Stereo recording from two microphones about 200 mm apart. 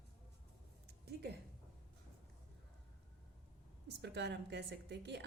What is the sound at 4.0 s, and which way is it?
A woman's voice, 60° right (ahead or behind).